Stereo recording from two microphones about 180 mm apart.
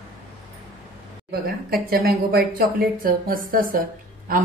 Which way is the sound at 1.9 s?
60° right (ahead or behind).